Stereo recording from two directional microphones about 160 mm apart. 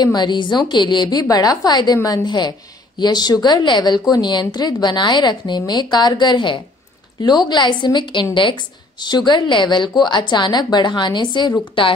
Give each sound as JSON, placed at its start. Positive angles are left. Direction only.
{"t": 0.0, "sound": "a woman's voice", "side_deg": 25}